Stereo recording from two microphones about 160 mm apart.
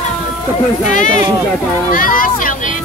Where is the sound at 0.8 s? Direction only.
55° left (ahead or behind).